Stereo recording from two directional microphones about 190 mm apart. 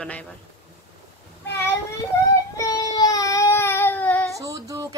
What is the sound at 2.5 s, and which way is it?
Child singing, 15° left (ahead or behind).